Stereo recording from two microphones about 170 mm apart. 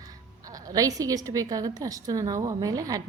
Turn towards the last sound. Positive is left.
turn(degrees=-20)  # may be behind; listen again after turning